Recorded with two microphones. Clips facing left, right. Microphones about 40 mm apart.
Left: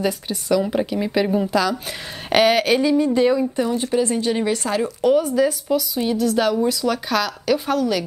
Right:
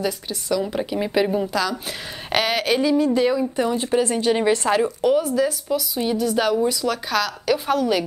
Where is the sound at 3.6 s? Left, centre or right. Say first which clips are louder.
Even; centre.